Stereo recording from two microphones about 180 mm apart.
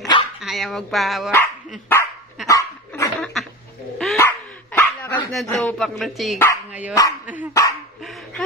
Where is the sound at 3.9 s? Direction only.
Centre (ahead or behind).